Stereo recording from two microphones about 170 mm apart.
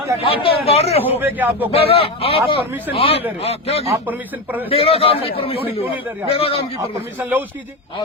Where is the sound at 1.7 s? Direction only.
35° left (ahead or behind).